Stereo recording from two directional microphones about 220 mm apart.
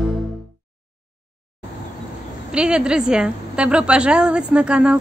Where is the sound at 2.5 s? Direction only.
5° right (ahead or behind).